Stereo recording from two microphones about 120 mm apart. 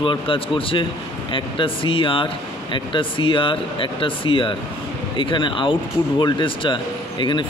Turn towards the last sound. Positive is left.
turn(degrees=40)  # may be behind; listen again after turning